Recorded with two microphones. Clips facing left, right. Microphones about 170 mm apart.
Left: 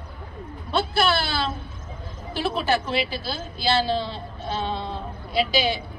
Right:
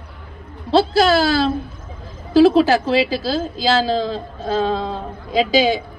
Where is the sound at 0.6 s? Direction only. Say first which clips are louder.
Right 8 dB; 90° right.